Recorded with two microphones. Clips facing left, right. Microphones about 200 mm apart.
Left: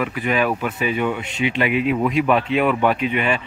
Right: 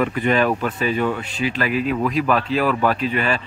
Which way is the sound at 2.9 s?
35° right (ahead or behind).